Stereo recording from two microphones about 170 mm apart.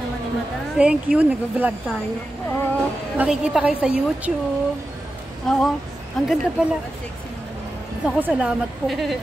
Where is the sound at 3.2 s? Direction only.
5° right (ahead or behind).